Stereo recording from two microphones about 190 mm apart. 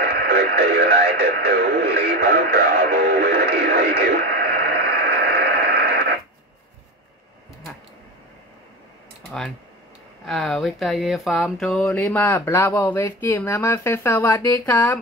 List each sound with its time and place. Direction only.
0.0 s radio: 60° right (ahead or behind)
5.0 s a sound: 60° right (ahead or behind)
10.2 s speech: centre (ahead or behind)